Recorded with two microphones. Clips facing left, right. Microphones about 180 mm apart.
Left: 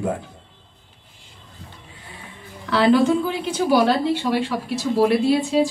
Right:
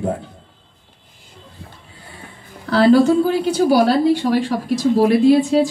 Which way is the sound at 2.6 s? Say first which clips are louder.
Right 4 dB; 40° right (ahead or behind).